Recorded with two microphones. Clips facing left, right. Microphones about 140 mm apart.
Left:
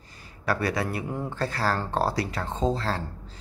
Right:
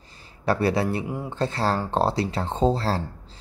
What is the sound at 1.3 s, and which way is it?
Speech, 25° right (ahead or behind).